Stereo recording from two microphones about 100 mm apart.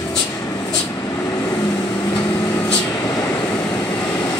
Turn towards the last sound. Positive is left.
turn(degrees=15)  # may be behind; listen again after turning